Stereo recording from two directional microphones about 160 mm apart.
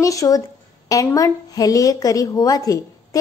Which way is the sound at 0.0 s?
20° left (ahead or behind).